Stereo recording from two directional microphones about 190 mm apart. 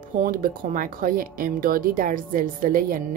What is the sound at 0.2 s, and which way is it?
Speech, 45° right (ahead or behind).